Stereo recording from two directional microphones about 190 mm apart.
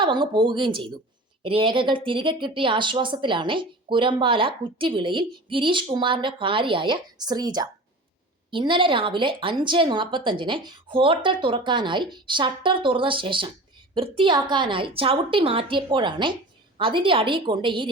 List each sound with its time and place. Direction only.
0.0 s speech: 25° right (ahead or behind)